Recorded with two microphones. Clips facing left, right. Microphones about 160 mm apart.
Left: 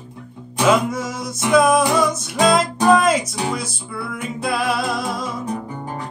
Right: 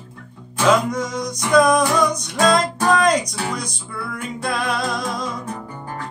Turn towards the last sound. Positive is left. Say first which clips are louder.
# left 4 dB
turn(degrees=15)  # may be behind; listen again after turning